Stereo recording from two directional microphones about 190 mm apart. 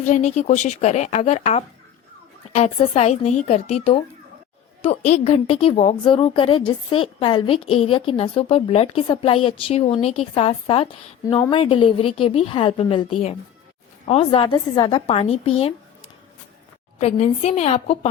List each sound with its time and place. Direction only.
0.0 s a woman's voice: 40° left (ahead or behind)
17.0 s a woman's voice: 35° left (ahead or behind)